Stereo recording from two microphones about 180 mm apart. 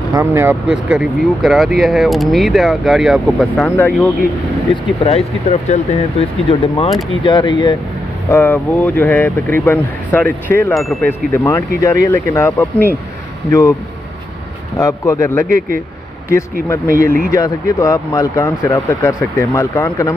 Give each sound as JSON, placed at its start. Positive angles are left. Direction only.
{"t": 0.1, "sound": "speech", "side_deg": -15}
{"t": 3.7, "sound": "speech", "side_deg": 10}
{"t": 5.5, "sound": "speech", "side_deg": 35}
{"t": 8.3, "sound": "speech", "side_deg": 10}
{"t": 10.7, "sound": "speech", "side_deg": 0}
{"t": 11.1, "sound": "speech", "side_deg": 15}
{"t": 14.8, "sound": "speech", "side_deg": 15}
{"t": 16.6, "sound": "speech", "side_deg": 15}
{"t": 16.9, "sound": "speech", "side_deg": -50}
{"t": 17.3, "sound": "speech", "side_deg": 20}